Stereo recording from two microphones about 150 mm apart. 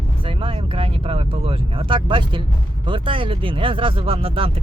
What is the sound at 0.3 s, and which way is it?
Speech, 35° right (ahead or behind).